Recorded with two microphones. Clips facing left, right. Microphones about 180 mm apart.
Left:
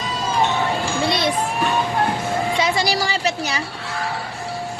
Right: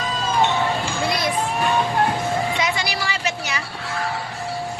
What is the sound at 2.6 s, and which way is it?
Music, 35° left (ahead or behind).